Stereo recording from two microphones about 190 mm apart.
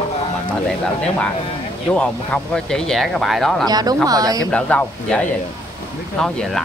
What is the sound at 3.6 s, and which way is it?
Speech, 20° right (ahead or behind).